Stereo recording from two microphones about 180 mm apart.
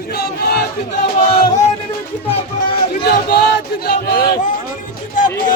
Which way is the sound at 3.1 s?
55° left (ahead or behind).